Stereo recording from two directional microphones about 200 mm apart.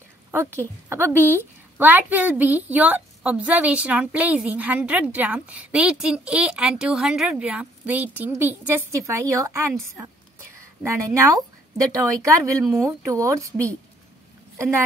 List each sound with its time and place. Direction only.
0.3 s a woman's voice: 15° right (ahead or behind)